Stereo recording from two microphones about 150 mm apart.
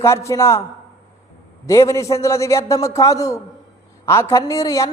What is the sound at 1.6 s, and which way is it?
A man's voice, 20° left (ahead or behind).